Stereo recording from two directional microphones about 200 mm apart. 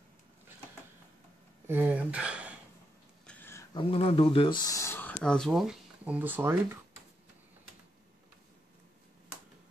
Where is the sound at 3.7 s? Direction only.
30° left (ahead or behind); by 6.8 s 10° right (ahead or behind).